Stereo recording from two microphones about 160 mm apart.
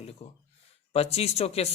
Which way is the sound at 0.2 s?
45° left (ahead or behind).